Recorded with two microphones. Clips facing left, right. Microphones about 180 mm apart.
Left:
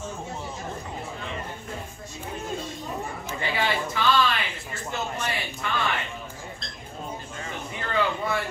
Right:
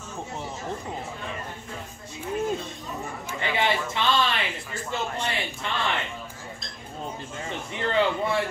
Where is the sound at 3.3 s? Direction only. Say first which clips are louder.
Right 2 dB; 20° right (ahead or behind).